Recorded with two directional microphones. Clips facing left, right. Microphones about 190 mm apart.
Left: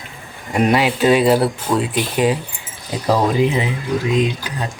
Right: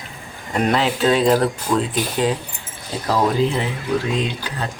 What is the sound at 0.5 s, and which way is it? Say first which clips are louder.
Speech: left 3 dB; 10° left (ahead or behind).